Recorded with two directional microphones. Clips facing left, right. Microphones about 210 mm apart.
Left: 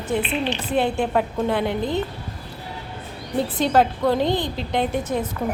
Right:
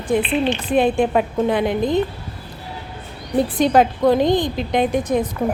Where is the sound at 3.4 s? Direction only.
15° right (ahead or behind).